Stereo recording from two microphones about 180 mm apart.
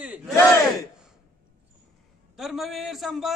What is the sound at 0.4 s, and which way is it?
Battle cry, 20° left (ahead or behind).